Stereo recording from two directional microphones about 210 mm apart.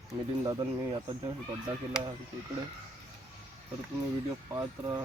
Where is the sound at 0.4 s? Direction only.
20° right (ahead or behind).